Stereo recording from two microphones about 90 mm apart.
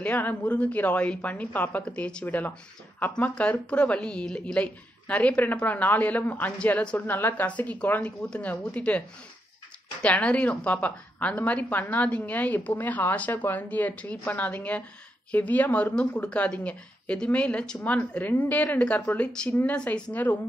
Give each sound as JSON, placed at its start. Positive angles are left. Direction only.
{"t": 0.0, "sound": "a woman's voice", "side_deg": 20}
{"t": 7.0, "sound": "a woman's voice", "side_deg": 25}
{"t": 10.0, "sound": "a woman's voice", "side_deg": 15}